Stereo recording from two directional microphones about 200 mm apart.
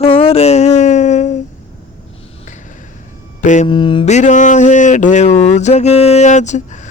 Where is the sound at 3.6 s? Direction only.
25° left (ahead or behind).